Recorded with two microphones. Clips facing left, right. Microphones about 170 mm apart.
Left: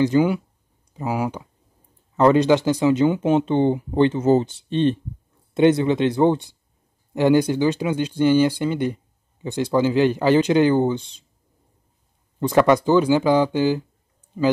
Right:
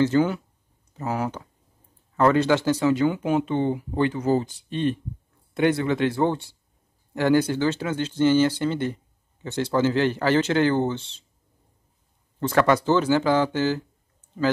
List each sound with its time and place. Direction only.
0.0 s speech: 15° left (ahead or behind)
12.4 s speech: 15° left (ahead or behind)